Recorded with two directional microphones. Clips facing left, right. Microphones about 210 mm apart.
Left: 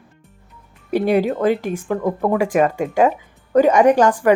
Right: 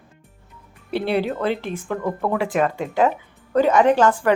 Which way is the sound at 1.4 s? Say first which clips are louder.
Left 5 dB; 10° left (ahead or behind).